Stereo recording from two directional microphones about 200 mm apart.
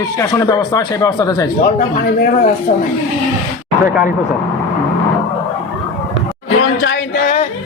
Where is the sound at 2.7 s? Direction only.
40° left (ahead or behind).